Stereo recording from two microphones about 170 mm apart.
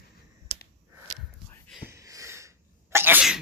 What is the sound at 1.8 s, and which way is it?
Sneeze, 20° right (ahead or behind).